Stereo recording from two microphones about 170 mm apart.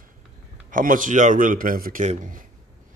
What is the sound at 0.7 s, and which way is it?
Speech, 50° right (ahead or behind).